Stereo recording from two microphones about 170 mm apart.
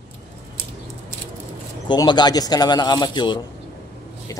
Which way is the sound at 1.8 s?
25° left (ahead or behind).